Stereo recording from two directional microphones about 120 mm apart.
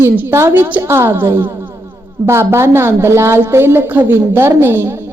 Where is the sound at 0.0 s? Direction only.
20° right (ahead or behind).